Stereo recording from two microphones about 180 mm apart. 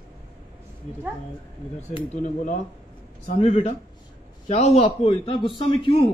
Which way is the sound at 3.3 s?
35° left (ahead or behind).